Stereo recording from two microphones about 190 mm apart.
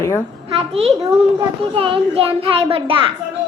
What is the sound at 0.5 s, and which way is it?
A child's voice, 30° right (ahead or behind).